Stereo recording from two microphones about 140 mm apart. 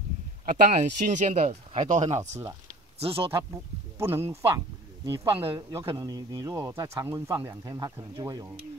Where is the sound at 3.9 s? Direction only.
15° right (ahead or behind).